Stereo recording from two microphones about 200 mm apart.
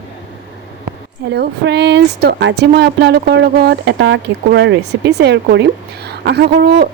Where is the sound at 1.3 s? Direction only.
55° right (ahead or behind).